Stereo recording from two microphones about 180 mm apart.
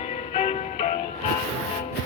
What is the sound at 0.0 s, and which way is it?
Music, 40° left (ahead or behind).